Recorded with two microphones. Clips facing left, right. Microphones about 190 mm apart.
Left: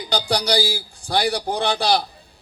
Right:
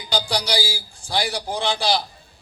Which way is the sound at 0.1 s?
55° left (ahead or behind).